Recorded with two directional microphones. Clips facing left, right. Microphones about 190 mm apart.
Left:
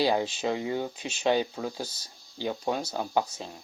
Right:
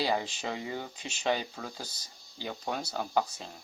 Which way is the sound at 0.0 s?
20° left (ahead or behind).